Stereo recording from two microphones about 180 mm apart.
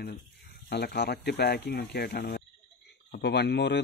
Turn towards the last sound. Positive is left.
turn(degrees=70)  # may be behind; listen again after turning